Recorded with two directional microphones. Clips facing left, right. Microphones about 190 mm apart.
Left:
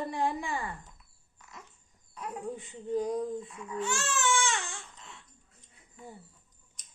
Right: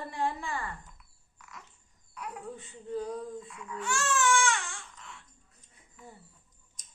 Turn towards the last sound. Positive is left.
turn(degrees=25)  # may be behind; listen again after turning